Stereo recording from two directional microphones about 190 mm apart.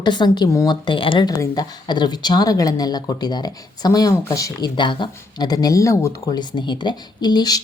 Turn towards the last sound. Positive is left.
turn(degrees=20)  # may be behind; listen again after turning